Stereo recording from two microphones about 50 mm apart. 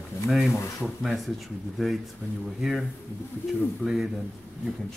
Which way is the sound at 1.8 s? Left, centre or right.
Centre.